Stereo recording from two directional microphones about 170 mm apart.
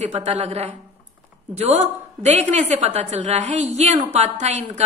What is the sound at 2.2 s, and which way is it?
A woman's voice, 45° right (ahead or behind).